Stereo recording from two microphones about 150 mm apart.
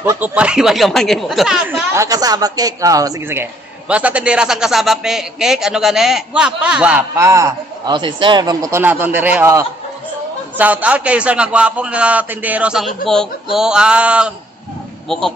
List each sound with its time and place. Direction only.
0.0 s speech: 15° right (ahead or behind)
2.0 s a woman's voice: 25° right (ahead or behind)
3.9 s a man's voice: 10° right (ahead or behind)
8.8 s a man's voice: 15° right (ahead or behind)